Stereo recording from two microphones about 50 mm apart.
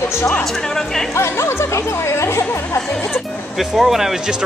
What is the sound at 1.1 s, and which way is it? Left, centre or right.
Speech, left.